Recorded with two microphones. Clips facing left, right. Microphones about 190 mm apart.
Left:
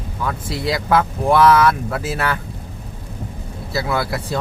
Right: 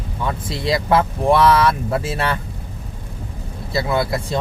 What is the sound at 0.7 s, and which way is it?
Speech, 25° right (ahead or behind).